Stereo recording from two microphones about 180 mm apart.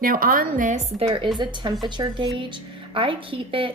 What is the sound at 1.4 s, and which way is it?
A woman's voice, 25° right (ahead or behind).